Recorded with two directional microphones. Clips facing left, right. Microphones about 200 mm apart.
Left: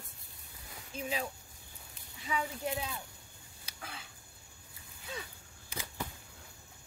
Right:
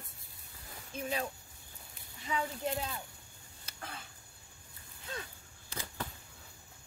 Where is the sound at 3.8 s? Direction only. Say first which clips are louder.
Right 1 dB; 5° left (ahead or behind).